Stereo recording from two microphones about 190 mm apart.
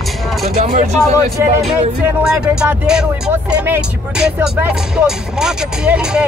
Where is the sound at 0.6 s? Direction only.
40° right (ahead or behind).